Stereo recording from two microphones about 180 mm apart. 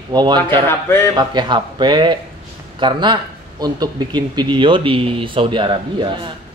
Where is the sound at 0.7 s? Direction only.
15° left (ahead or behind).